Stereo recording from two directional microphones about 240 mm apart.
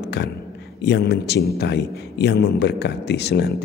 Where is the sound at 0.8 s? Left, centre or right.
Left.